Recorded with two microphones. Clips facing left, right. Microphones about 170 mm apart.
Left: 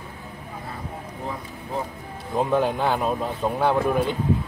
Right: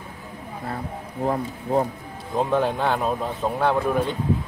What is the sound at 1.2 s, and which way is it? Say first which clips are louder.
Speech: right 11 dB; 55° right (ahead or behind).